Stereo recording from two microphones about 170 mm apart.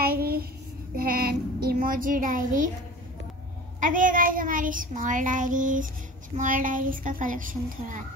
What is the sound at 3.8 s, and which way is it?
Child singing, 50° right (ahead or behind).